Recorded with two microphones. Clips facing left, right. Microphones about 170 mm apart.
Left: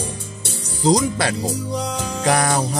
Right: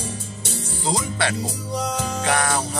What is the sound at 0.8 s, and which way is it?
Music, 40° left (ahead or behind).